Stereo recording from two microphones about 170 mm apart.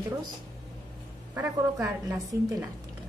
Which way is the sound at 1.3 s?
20° right (ahead or behind).